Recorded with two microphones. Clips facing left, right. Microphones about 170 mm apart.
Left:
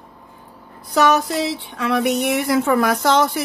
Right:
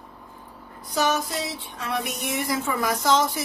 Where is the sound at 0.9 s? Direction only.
65° left (ahead or behind).